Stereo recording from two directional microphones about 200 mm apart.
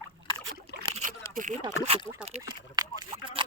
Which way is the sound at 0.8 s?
35° right (ahead or behind).